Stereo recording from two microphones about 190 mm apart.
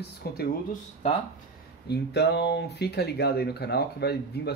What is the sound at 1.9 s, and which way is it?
Speech, 60° left (ahead or behind).